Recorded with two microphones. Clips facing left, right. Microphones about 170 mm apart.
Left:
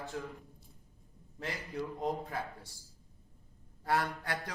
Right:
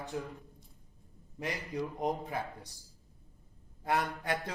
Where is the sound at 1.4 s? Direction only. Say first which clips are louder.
Right 3 dB; 15° right (ahead or behind).